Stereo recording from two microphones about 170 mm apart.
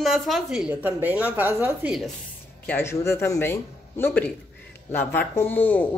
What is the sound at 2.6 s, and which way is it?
Speech, 15° left (ahead or behind).